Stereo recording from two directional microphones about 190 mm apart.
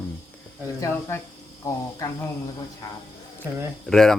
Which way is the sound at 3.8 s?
5° left (ahead or behind).